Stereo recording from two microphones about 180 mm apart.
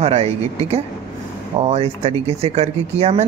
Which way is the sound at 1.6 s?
35° right (ahead or behind).